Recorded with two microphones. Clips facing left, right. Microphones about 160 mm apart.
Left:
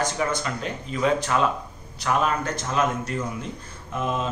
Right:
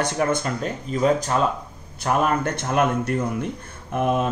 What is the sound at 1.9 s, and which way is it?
A man's voice, 50° right (ahead or behind).